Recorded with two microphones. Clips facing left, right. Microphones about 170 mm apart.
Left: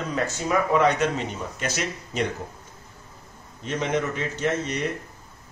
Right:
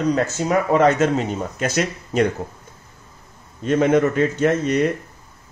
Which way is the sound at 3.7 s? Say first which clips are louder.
Right 10 dB; 55° right (ahead or behind).